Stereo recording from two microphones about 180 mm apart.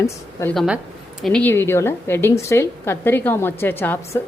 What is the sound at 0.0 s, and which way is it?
Speech, 15° left (ahead or behind).